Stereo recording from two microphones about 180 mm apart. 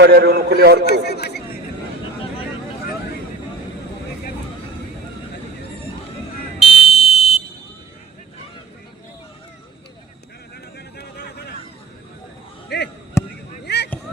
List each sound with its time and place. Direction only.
0.0 s a man's voice: 60° right (ahead or behind)
0.9 s a man's voice: 65° left (ahead or behind)
6.6 s fire alarm: 30° left (ahead or behind)
10.8 s vehicle: 65° left (ahead or behind)
12.7 s a sound: 65° left (ahead or behind)